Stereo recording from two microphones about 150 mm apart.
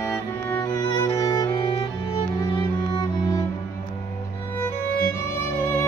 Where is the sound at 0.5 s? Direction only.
20° left (ahead or behind).